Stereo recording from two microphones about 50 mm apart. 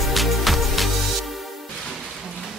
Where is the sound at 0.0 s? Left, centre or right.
Centre.